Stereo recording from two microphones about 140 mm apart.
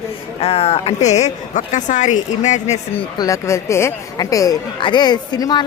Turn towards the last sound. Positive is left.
turn(degrees=30)  # may be behind; listen again after turning